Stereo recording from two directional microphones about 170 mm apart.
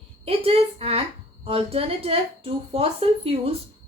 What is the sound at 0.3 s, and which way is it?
A woman's voice, 35° right (ahead or behind).